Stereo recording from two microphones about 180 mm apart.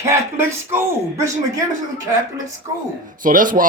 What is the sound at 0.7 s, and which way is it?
Speech, 15° right (ahead or behind).